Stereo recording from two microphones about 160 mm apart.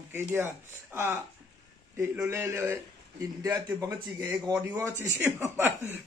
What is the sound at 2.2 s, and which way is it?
Speech, 15° right (ahead or behind).